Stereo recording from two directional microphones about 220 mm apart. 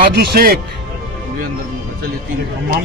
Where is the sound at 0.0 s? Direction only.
45° right (ahead or behind).